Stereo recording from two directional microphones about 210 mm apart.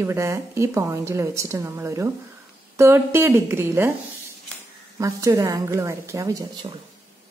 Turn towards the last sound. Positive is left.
turn(degrees=-20)  # may be behind; listen again after turning